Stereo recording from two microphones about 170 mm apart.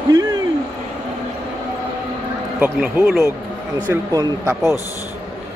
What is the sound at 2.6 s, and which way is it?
A man's voice, 10° right (ahead or behind).